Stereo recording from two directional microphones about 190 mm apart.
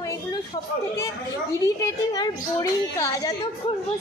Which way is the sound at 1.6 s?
20° left (ahead or behind).